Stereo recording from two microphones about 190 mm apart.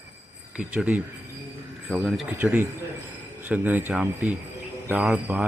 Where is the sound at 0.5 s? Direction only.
5° right (ahead or behind).